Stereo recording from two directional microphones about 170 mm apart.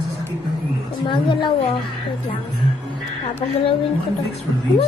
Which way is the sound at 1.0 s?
30° left (ahead or behind).